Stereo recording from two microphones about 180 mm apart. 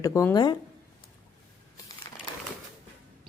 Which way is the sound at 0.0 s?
15° left (ahead or behind).